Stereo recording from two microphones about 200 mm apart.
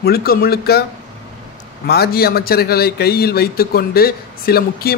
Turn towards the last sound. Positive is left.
turn(degrees=50)  # may be behind; listen again after turning